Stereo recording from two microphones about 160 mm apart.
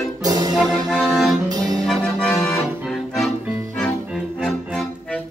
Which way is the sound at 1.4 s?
25° right (ahead or behind).